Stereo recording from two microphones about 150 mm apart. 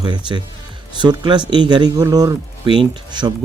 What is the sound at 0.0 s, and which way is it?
Speech, 30° right (ahead or behind).